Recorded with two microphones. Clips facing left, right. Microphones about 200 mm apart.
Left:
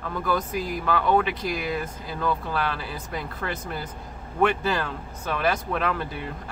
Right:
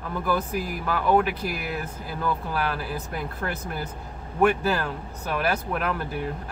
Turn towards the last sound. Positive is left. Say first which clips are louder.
# left 1 dB
turn(degrees=-10)  # may be behind; listen again after turning